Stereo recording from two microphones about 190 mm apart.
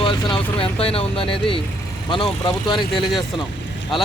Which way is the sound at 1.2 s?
5° left (ahead or behind).